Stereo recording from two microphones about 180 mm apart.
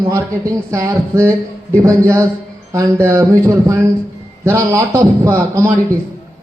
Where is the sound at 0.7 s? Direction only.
15° right (ahead or behind).